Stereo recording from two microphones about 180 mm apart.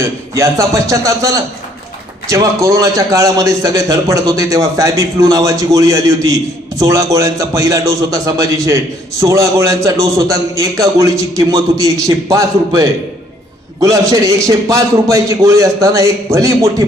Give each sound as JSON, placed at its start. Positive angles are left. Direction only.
{"t": 0.0, "sound": "a man's voice", "side_deg": -15}